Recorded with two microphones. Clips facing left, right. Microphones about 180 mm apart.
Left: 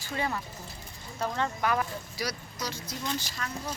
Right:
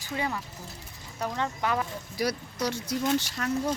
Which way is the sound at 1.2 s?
20° right (ahead or behind).